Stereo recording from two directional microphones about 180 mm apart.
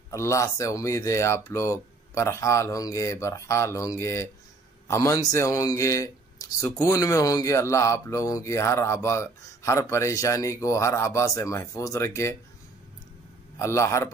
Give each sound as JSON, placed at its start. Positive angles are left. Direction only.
{"t": 0.1, "sound": "speech", "side_deg": 15}
{"t": 13.6, "sound": "speech", "side_deg": 15}